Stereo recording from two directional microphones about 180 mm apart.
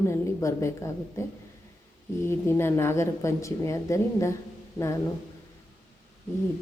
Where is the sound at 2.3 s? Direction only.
15° left (ahead or behind).